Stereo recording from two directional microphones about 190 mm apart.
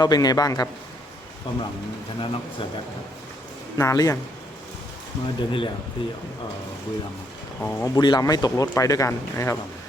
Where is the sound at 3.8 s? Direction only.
15° left (ahead or behind).